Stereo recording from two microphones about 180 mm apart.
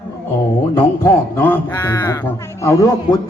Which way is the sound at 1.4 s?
15° left (ahead or behind).